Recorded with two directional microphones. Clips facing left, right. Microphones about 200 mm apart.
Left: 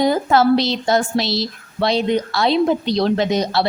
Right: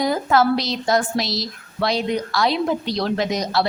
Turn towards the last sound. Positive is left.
turn(degrees=25)  # may be behind; listen again after turning